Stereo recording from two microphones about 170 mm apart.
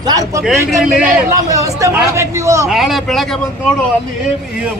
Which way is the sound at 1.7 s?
20° right (ahead or behind).